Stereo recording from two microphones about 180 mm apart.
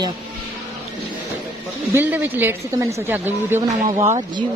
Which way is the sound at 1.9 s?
10° right (ahead or behind).